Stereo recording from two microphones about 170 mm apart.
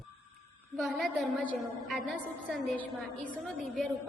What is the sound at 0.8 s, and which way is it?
A woman's voice, centre (ahead or behind).